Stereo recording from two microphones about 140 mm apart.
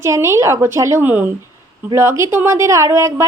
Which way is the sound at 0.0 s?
20° right (ahead or behind).